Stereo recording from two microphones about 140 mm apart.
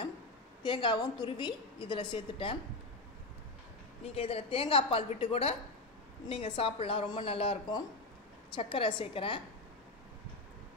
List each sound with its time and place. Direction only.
0.6 s a woman's voice: 35° left (ahead or behind)
4.0 s a woman's voice: 45° left (ahead or behind)